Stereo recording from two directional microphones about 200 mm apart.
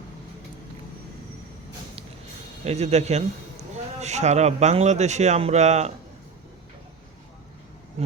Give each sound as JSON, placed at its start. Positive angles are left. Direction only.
{"t": 2.6, "sound": "speech", "side_deg": -35}
{"t": 8.0, "sound": "speech", "side_deg": -30}